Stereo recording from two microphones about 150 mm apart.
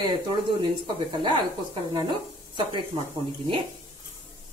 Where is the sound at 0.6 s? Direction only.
35° right (ahead or behind).